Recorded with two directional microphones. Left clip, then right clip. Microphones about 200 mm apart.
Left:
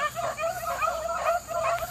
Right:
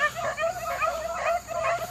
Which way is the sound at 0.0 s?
40° right (ahead or behind).